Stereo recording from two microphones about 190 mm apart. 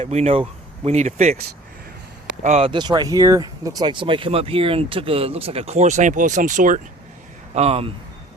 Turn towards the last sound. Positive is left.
turn(degrees=-30)  # may be behind; listen again after turning